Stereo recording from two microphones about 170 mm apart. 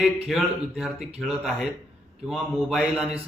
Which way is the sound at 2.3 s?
Centre (ahead or behind).